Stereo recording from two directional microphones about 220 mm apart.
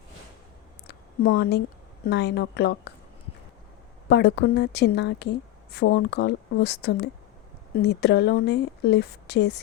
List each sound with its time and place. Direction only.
0.9 s a sound: 45° left (ahead or behind)
2.0 s a woman's voice: 50° left (ahead or behind)
4.1 s a woman's voice: 50° left (ahead or behind)